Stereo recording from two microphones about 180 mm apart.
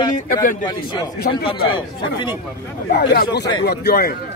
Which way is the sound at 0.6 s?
25° left (ahead or behind).